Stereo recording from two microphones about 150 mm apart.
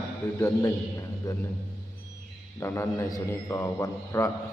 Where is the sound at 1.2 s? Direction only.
20° left (ahead or behind).